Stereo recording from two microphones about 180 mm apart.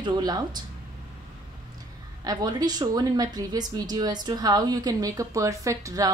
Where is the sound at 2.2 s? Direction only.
20° right (ahead or behind).